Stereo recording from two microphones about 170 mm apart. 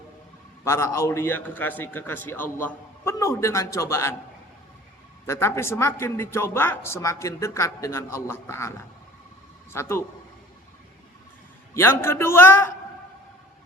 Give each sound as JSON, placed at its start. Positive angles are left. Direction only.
{"t": 0.6, "sound": "a man's voice", "side_deg": 15}
{"t": 5.2, "sound": "a man's voice", "side_deg": 15}
{"t": 11.7, "sound": "a man's voice", "side_deg": 15}